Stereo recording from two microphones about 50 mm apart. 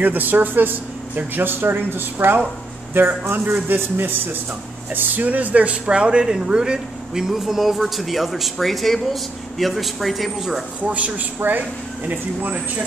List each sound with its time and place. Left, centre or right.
0.0 s speech: right
4.9 s speech: right; by 10.6 s centre
10.8 s a man's voice: right
11.3 s speech: right